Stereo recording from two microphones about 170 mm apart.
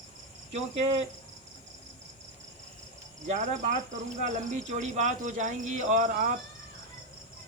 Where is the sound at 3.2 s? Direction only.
45° right (ahead or behind).